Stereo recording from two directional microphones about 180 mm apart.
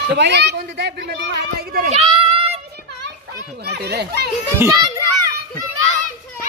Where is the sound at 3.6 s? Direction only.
65° right (ahead or behind).